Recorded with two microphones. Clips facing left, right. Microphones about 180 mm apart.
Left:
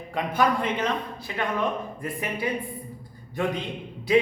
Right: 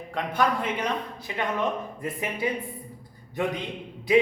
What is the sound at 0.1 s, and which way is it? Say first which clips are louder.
Speech: left 2 dB; 5° left (ahead or behind).